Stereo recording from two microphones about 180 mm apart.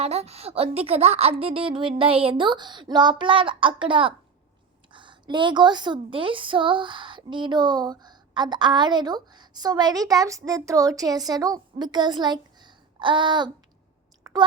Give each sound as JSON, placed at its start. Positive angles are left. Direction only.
{"t": 0.0, "sound": "a woman's voice", "side_deg": -35}
{"t": 14.3, "sound": "chewing", "side_deg": -20}